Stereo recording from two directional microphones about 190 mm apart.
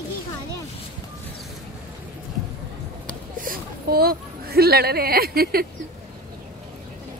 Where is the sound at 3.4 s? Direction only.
50° right (ahead or behind).